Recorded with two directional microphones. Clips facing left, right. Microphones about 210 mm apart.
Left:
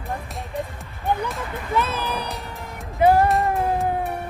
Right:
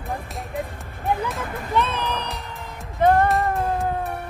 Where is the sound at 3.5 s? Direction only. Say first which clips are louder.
Left 1 dB; 15° left (ahead or behind).